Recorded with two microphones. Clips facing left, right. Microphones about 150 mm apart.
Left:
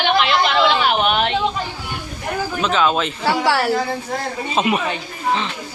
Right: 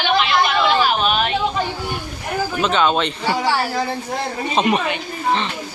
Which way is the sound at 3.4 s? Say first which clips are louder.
Left 3 dB; 70° left (ahead or behind).